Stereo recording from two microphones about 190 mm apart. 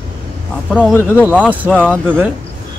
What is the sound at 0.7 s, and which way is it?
Speech, centre (ahead or behind).